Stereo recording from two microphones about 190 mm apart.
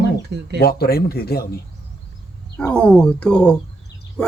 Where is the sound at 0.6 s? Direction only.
55° left (ahead or behind).